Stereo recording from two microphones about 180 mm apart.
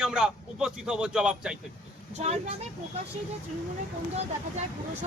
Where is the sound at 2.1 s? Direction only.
35° right (ahead or behind).